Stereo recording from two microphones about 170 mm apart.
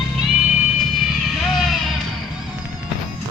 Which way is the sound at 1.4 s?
Centre (ahead or behind).